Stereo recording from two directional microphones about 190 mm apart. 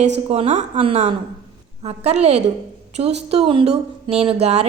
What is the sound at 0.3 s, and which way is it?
A woman's voice, 35° right (ahead or behind).